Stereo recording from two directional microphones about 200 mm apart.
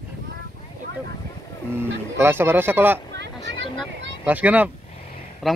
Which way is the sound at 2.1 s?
10° right (ahead or behind).